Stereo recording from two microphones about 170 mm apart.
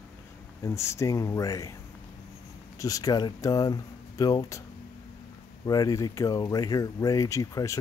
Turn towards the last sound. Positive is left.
turn(degrees=20)  # may be behind; listen again after turning